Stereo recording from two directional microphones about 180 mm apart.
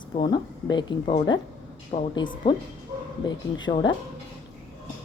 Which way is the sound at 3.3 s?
25° left (ahead or behind).